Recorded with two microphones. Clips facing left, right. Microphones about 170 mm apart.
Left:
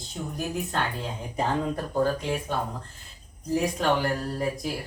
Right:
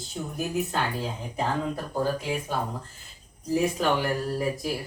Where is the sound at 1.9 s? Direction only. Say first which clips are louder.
Left 2 dB; 5° right (ahead or behind).